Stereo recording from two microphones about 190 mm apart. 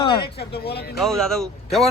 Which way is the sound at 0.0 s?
30° left (ahead or behind).